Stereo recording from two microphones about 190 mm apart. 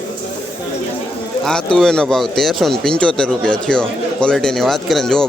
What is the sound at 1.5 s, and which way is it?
Speech, 5° left (ahead or behind).